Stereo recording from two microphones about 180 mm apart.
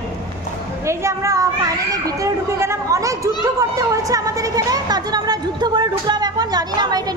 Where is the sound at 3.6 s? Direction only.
20° right (ahead or behind).